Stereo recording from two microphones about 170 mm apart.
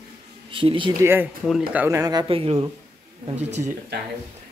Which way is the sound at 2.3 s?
35° right (ahead or behind).